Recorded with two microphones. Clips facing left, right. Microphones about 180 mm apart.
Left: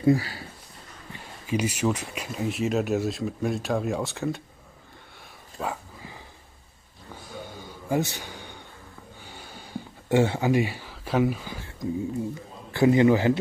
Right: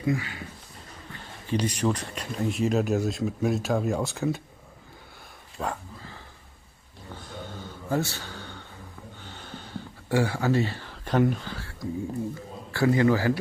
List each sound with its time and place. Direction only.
0.0 s speech: 35° left (ahead or behind)
1.5 s speech: 5° left (ahead or behind)
5.6 s speech: centre (ahead or behind)
7.4 s a sound: 10° left (ahead or behind)
12.7 s a man's voice: 20° left (ahead or behind)